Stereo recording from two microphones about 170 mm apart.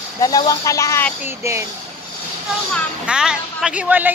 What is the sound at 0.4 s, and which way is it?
Speech, 20° left (ahead or behind).